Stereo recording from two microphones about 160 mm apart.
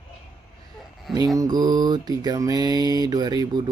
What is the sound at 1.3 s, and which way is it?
Mantra, 25° right (ahead or behind).